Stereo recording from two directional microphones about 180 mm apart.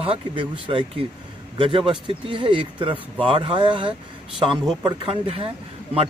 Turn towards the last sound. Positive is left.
turn(degrees=-35)  # may be behind; listen again after turning